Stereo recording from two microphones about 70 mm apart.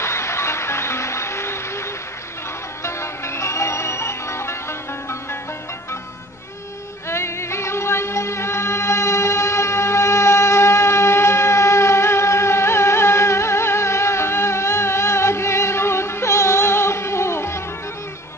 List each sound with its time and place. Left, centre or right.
0.0 s music: left
2.8 s music: left
7.1 s music: left